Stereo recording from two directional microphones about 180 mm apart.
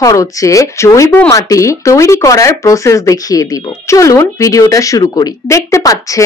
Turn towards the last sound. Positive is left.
turn(degrees=20)  # may be behind; listen again after turning